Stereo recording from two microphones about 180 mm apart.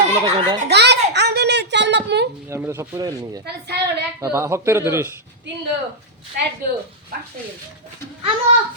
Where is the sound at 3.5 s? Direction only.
65° right (ahead or behind).